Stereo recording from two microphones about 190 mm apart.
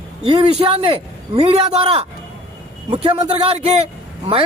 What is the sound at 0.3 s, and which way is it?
A man's voice, 30° right (ahead or behind).